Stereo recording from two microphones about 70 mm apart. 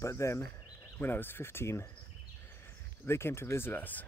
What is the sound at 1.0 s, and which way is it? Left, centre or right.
Speech, left.